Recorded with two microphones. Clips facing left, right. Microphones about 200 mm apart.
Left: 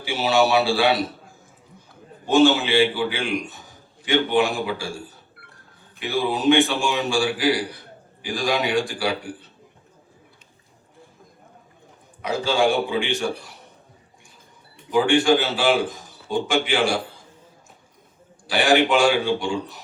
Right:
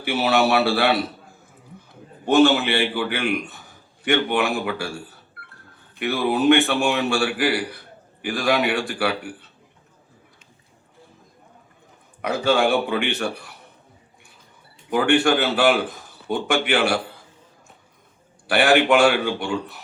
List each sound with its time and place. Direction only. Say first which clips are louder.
0.0 s a man's voice: even; 60° right (ahead or behind)
2.2 s a man's voice: right 1 dB; 60° right (ahead or behind)
6.0 s a man's voice: right 3 dB; 60° right (ahead or behind)
12.2 s a man's voice: right 1 dB; 60° right (ahead or behind)
14.8 s a man's voice: left 1 dB; 60° right (ahead or behind)
18.4 s a man's voice: right 1 dB; 60° right (ahead or behind)